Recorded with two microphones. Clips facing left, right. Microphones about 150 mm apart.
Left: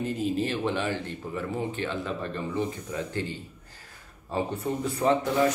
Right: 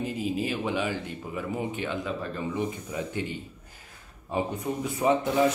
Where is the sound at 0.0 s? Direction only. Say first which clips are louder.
Left 2 dB; 5° right (ahead or behind).